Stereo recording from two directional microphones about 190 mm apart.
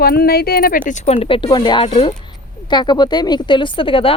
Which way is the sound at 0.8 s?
35° left (ahead or behind).